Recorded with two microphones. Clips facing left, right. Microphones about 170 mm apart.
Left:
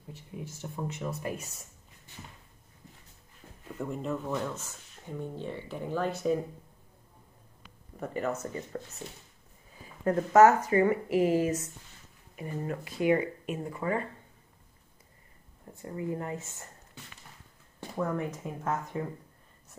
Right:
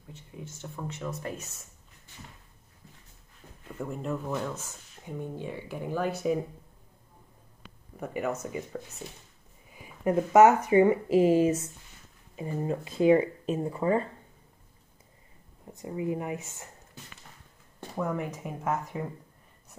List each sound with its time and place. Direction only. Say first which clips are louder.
0.7 s speech: left 1 dB; 15° left (ahead or behind)
3.6 s speech: even; centre (ahead or behind)
8.0 s speech: right 1 dB; 10° right (ahead or behind); by 14.0 s 30° right (ahead or behind)
15.6 s speech: right 3 dB; 15° right (ahead or behind)
18.0 s speech: even; 10° right (ahead or behind)